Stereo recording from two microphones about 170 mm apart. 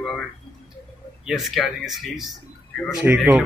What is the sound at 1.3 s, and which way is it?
Speech, centre (ahead or behind).